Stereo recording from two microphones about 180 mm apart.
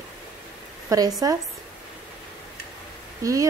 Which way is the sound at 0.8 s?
20° right (ahead or behind).